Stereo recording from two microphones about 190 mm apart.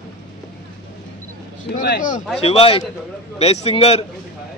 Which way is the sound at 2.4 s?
30° left (ahead or behind).